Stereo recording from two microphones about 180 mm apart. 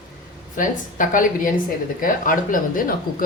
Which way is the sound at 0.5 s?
45° left (ahead or behind).